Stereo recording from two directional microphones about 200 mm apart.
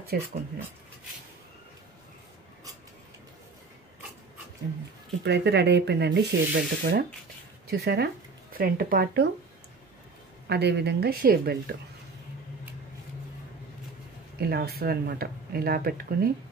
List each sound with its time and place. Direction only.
0.1 s speech: 50° right (ahead or behind)
5.2 s speech: 60° right (ahead or behind)
10.5 s speech: 55° right (ahead or behind)
14.4 s speech: 50° right (ahead or behind)